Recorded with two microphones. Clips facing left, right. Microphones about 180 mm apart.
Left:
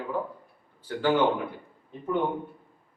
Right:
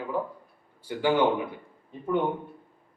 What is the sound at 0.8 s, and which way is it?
Speech, 10° right (ahead or behind).